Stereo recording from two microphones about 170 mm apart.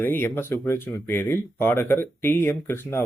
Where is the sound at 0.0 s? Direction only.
10° left (ahead or behind).